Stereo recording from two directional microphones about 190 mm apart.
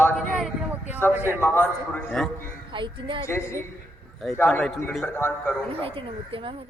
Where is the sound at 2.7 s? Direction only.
25° right (ahead or behind).